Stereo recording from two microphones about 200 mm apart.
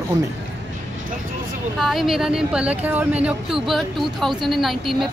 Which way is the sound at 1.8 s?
Centre (ahead or behind).